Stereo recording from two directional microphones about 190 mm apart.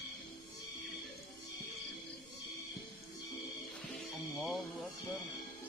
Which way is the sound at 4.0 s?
Centre (ahead or behind).